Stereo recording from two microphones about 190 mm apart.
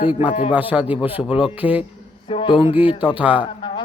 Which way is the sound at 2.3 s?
25° left (ahead or behind).